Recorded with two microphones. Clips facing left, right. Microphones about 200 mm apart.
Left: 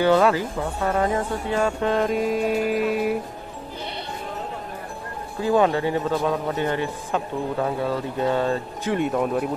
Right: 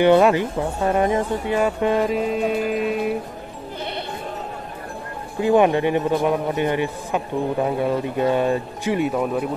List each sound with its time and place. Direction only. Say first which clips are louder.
0.0 s speech: right 3 dB; 20° right (ahead or behind)
2.2 s music: even; 5° left (ahead or behind)
5.4 s speech: right 3 dB; 20° right (ahead or behind); by 9.5 s centre (ahead or behind)